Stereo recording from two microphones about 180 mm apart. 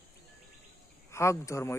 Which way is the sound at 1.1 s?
15° left (ahead or behind).